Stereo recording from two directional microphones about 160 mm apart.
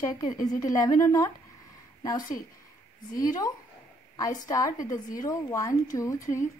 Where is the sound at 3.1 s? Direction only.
20° left (ahead or behind).